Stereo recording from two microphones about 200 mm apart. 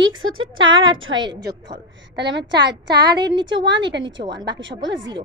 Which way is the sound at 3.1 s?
60° right (ahead or behind).